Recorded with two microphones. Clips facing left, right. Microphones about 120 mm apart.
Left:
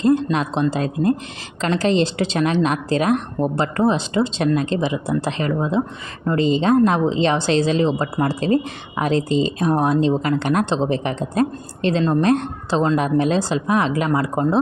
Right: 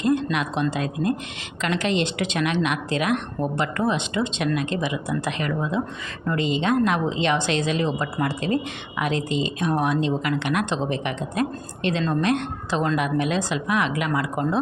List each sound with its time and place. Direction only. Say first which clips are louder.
0.0 s speech: left 5 dB; 35° left (ahead or behind)